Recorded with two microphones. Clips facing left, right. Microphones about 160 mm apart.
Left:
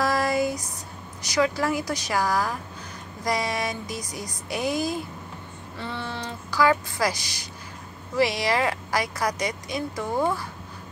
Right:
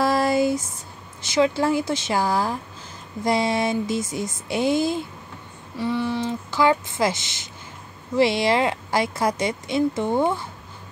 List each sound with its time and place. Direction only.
0.0 s a sound: 30° right (ahead or behind)
1.2 s speech: 25° right (ahead or behind)
5.8 s speech: 15° right (ahead or behind)